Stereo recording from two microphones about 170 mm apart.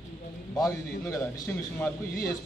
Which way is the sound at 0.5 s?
20° left (ahead or behind).